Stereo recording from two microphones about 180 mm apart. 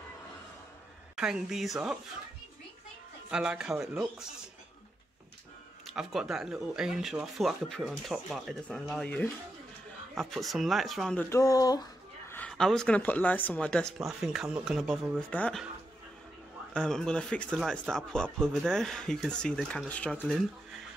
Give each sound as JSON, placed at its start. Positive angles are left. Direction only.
{"t": 1.1, "sound": "speech", "side_deg": -5}
{"t": 3.3, "sound": "speech", "side_deg": -5}
{"t": 5.9, "sound": "speech", "side_deg": 0}
{"t": 11.2, "sound": "speech", "side_deg": 20}
{"t": 12.3, "sound": "speech", "side_deg": 5}
{"t": 16.7, "sound": "speech", "side_deg": 5}